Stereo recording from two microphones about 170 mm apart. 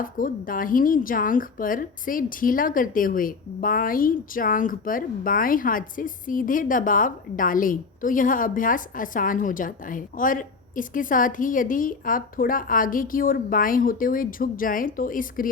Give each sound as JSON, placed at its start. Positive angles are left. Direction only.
{"t": 0.0, "sound": "speech", "side_deg": 55}